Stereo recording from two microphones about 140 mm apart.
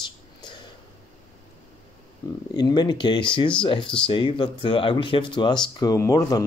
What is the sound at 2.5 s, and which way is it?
Speech, 30° left (ahead or behind).